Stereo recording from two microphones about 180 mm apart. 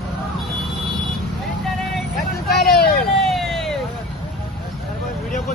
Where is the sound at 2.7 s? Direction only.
60° left (ahead or behind).